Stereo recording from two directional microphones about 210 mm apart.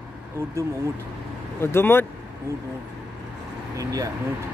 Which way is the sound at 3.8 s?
15° right (ahead or behind).